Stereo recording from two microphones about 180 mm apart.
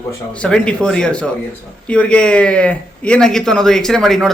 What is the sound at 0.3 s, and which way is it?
Speech, 5° left (ahead or behind).